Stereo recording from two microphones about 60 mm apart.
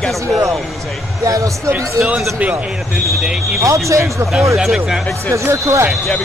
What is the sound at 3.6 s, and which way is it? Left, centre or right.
Speech, right.